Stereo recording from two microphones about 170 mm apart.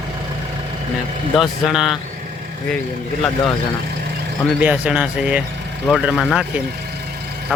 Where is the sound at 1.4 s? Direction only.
Centre (ahead or behind).